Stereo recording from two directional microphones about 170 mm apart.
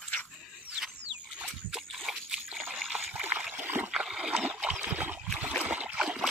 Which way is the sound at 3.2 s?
10° right (ahead or behind).